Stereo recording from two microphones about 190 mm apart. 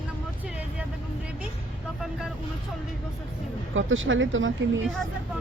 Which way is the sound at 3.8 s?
90° right.